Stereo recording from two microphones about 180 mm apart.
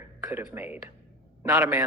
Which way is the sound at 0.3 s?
10° right (ahead or behind).